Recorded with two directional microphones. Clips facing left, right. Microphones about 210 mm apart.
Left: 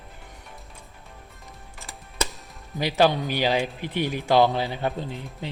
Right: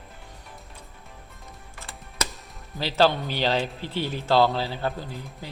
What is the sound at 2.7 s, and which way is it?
Speech, 15° left (ahead or behind).